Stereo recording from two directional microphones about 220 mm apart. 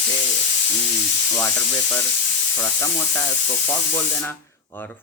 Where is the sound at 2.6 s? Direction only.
15° left (ahead or behind).